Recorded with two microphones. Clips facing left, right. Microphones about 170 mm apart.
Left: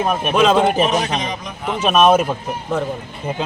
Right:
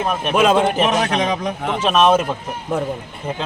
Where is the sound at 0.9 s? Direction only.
60° right (ahead or behind).